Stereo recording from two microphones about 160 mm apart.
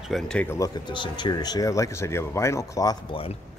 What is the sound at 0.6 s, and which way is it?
Speech, 30° left (ahead or behind).